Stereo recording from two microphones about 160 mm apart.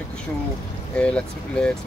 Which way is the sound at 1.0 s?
5° left (ahead or behind).